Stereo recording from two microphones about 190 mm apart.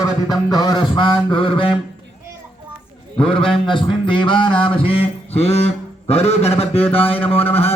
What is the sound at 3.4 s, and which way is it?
Mantra, 25° left (ahead or behind).